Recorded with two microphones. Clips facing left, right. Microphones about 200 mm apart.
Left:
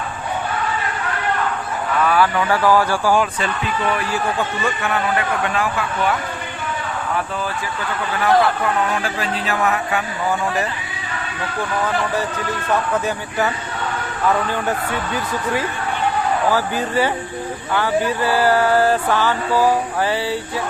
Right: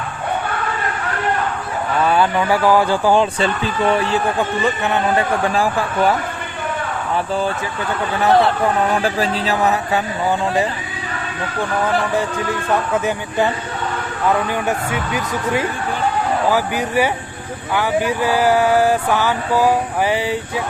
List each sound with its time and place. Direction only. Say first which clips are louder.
2.0 s speech: right 1 dB; 25° right (ahead or behind)
8.2 s speech: right 2 dB; 25° right (ahead or behind)
12.9 s speech: right 2 dB; 15° right (ahead or behind)
16.5 s speech: right 1 dB; 15° right (ahead or behind)